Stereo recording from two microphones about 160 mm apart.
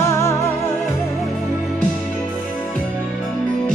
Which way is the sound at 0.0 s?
15° left (ahead or behind).